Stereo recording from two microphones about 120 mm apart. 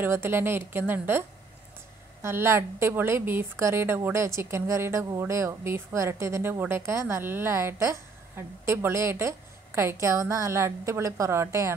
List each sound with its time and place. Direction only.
0.0 s a woman's voice: 20° right (ahead or behind)
2.2 s a woman's voice: 20° right (ahead or behind)